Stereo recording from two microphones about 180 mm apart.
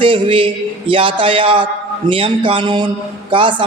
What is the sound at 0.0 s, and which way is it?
A man's voice, 30° right (ahead or behind).